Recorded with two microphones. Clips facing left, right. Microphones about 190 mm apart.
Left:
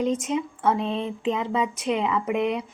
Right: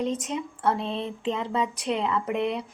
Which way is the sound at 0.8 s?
35° right (ahead or behind).